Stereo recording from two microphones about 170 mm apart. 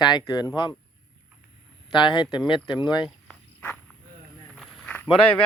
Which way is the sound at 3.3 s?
10° left (ahead or behind).